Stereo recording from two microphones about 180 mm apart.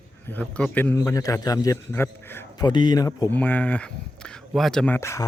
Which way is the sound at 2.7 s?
25° left (ahead or behind).